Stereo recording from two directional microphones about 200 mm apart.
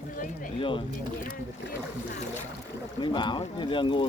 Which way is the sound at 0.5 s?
25° left (ahead or behind).